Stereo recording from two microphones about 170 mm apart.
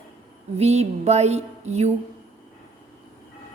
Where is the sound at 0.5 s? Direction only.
40° right (ahead or behind).